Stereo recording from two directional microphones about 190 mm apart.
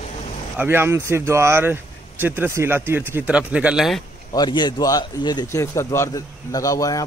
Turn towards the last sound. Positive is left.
turn(degrees=20)  # may be behind; listen again after turning